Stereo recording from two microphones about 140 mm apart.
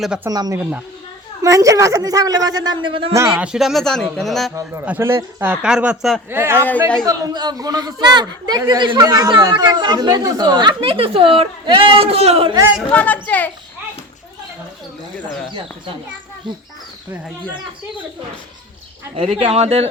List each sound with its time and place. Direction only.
0.3 s a woman's voice: 25° right (ahead or behind)
3.3 s speech: 5° right (ahead or behind)
4.9 s speech: 15° right (ahead or behind); by 6.2 s centre (ahead or behind)
6.3 s speech: 15° right (ahead or behind)
7.0 s speech: 30° right (ahead or behind); by 12.5 s 45° right (ahead or behind)
12.9 s a child's voice: 10° left (ahead or behind)
19.1 s speech: 45° right (ahead or behind)